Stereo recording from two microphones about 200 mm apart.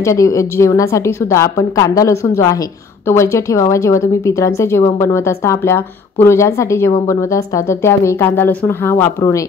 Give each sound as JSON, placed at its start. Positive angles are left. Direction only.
{"t": 0.0, "sound": "speech", "side_deg": 15}